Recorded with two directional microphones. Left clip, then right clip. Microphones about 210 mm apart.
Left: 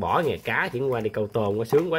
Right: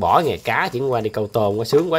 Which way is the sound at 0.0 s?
10° right (ahead or behind).